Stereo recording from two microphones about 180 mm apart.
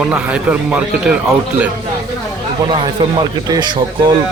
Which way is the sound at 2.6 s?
25° right (ahead or behind).